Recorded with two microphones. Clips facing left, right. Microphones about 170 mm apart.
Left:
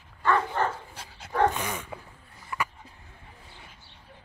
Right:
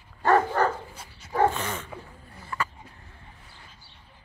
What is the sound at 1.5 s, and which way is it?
Dog, 10° left (ahead or behind).